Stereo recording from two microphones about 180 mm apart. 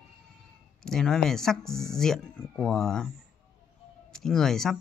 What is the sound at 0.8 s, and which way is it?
Speech, 5° left (ahead or behind).